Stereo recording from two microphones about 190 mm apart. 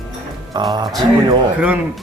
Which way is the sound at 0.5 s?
20° right (ahead or behind).